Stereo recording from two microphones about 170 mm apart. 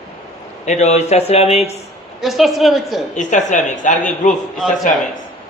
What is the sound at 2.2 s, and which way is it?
Speech, centre (ahead or behind).